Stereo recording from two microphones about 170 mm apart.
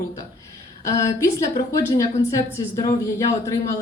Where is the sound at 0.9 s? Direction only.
20° left (ahead or behind).